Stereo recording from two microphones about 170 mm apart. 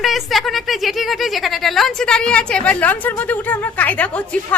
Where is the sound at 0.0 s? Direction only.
Centre (ahead or behind).